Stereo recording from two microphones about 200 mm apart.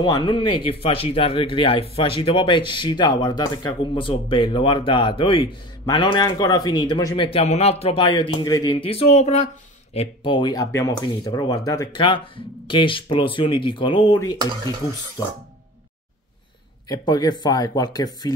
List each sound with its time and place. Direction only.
0.0 s speech: 25° left (ahead or behind)
7.2 s speech: 30° left (ahead or behind)
16.8 s speech: 20° left (ahead or behind)